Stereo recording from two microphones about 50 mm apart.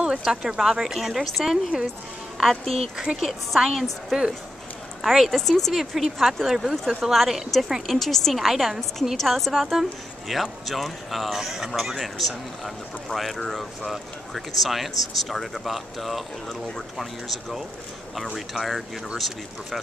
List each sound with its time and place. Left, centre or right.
0.2 s speech: centre
1.5 s speech: centre
3.2 s a woman's voice: centre
9.1 s speech: centre
9.5 s speech: centre